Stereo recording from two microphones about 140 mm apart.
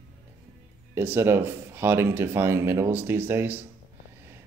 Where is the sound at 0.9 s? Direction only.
15° right (ahead or behind).